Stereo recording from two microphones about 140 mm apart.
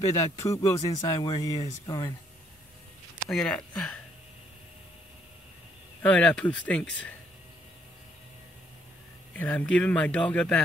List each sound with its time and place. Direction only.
0.0 s speech: 20° left (ahead or behind)
3.3 s speech: 5° left (ahead or behind)
6.0 s speech: 10° left (ahead or behind)
9.3 s speech: 10° left (ahead or behind)